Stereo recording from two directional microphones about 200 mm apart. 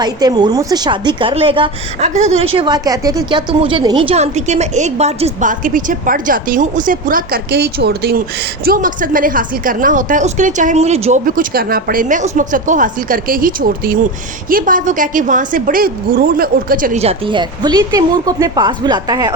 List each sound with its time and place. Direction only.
0.0 s a woman's voice: 20° right (ahead or behind); by 17.0 s 45° right (ahead or behind)
17.0 s a woman's voice: 25° right (ahead or behind)